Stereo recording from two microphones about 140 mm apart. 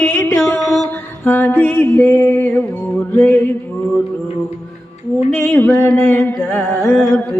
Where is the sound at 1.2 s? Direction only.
15° left (ahead or behind).